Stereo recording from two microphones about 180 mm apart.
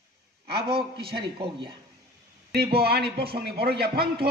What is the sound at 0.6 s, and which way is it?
Speech, 30° right (ahead or behind).